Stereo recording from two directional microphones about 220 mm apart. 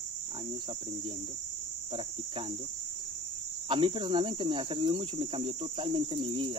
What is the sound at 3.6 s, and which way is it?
Cricket, 20° right (ahead or behind).